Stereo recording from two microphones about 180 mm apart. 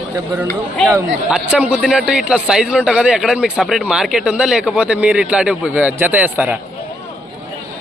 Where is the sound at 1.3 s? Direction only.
5° right (ahead or behind).